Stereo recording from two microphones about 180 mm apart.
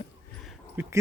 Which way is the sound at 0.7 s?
10° right (ahead or behind).